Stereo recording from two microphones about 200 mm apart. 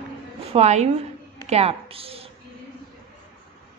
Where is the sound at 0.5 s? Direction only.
35° right (ahead or behind).